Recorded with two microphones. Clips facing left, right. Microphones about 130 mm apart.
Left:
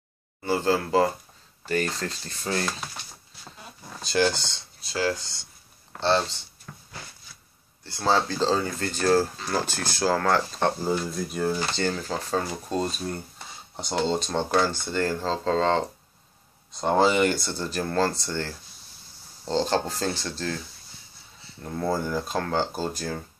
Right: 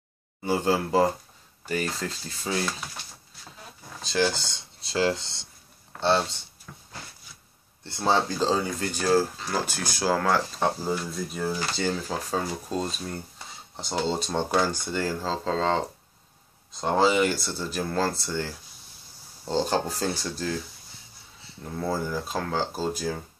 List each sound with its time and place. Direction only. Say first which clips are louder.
0.4 s speech: even; 15° right (ahead or behind)
4.0 s speech: left 2 dB; centre (ahead or behind)
4.7 s speech: right 2 dB; 25° right (ahead or behind)
5.9 s speech: even; 10° right (ahead or behind)
7.8 s speech: even; 20° right (ahead or behind); by 15.8 s 5° right (ahead or behind)
16.8 s speech: left 1 dB; centre (ahead or behind)
21.6 s speech: left 2 dB; centre (ahead or behind)